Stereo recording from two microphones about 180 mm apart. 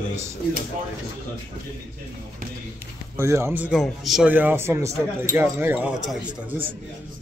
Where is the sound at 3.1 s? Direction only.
15° right (ahead or behind).